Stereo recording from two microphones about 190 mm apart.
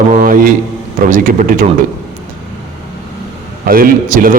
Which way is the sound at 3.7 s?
50° right (ahead or behind).